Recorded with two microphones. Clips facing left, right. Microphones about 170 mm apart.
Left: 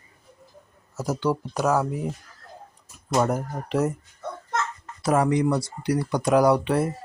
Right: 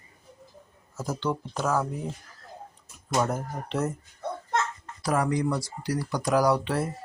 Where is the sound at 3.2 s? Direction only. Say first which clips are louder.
Left 4 dB; 10° left (ahead or behind).